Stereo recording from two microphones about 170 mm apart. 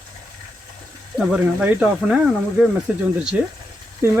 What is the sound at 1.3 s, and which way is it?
Speech, 5° right (ahead or behind).